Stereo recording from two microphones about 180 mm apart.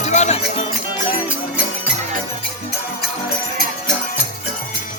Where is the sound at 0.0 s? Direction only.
40° left (ahead or behind).